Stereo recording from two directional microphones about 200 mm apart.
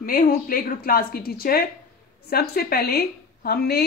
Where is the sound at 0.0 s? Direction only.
45° left (ahead or behind).